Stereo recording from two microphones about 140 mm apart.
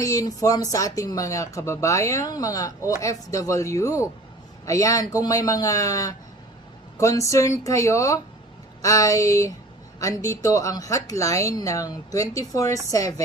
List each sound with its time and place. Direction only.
0.0 s speech: 25° left (ahead or behind)